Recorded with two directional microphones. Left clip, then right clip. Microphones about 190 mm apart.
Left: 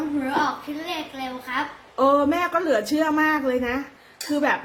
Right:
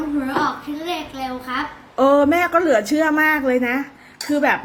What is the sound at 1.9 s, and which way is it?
A woman's voice, 15° right (ahead or behind).